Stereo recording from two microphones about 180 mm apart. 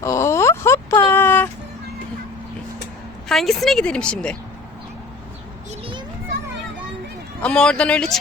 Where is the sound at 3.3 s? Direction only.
Centre (ahead or behind).